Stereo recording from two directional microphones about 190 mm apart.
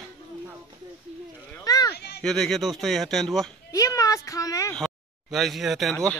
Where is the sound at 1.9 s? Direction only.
60° left (ahead or behind).